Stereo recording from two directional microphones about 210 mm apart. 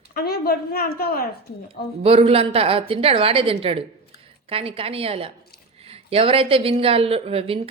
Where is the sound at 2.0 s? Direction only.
25° right (ahead or behind).